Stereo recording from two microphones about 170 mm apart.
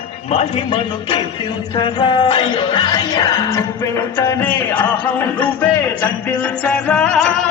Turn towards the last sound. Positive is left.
turn(degrees=5)  # may be behind; listen again after turning